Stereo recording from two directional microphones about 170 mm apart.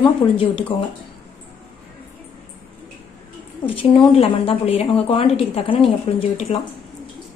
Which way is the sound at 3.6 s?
35° left (ahead or behind).